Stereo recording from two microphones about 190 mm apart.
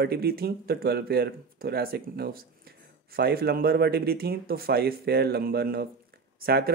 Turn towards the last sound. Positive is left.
turn(degrees=-55)  # may be behind; listen again after turning